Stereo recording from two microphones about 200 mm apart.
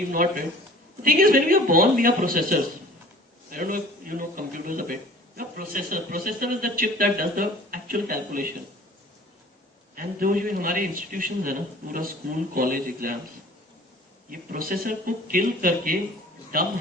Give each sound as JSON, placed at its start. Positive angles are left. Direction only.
{"t": 0.1, "sound": "a man's voice", "side_deg": -45}
{"t": 9.9, "sound": "a man's voice", "side_deg": -45}
{"t": 14.3, "sound": "a man's voice", "side_deg": -45}